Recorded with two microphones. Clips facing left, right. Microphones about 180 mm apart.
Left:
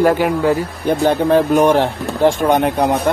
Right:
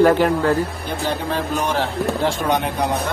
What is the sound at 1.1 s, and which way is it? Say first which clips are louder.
Speech: left 10 dB; 55° left (ahead or behind).